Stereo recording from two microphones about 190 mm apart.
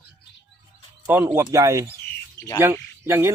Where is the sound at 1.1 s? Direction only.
15° right (ahead or behind).